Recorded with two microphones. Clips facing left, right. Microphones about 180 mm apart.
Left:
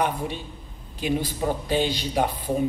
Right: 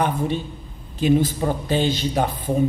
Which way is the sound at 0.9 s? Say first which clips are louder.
Right 8 dB; 10° left (ahead or behind).